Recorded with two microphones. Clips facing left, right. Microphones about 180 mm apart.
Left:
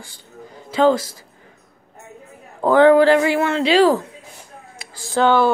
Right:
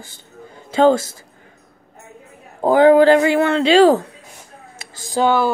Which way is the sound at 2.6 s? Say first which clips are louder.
Right 1 dB; 15° right (ahead or behind).